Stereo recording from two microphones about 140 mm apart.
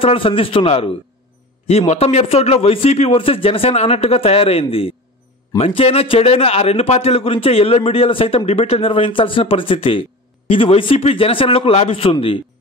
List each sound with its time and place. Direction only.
0.0 s a man's voice: 40° left (ahead or behind)